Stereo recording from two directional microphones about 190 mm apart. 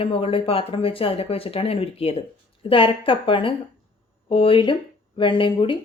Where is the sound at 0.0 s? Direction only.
30° left (ahead or behind).